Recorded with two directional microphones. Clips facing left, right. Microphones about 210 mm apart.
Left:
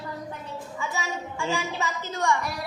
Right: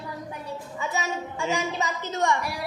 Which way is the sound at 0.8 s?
20° right (ahead or behind).